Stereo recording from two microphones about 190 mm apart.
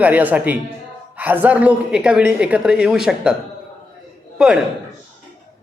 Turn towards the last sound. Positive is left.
turn(degrees=-5)  # may be behind; listen again after turning